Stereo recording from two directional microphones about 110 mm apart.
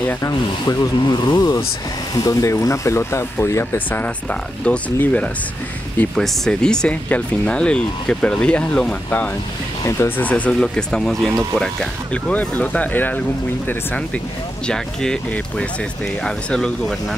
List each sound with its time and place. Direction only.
0.2 s speech: 35° left (ahead or behind); by 5.3 s 15° left (ahead or behind)
6.1 s speech: 5° left (ahead or behind)
9.8 s speech: 20° left (ahead or behind); by 17.2 s 5° left (ahead or behind)